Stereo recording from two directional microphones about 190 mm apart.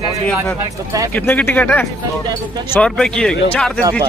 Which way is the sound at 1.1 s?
10° left (ahead or behind).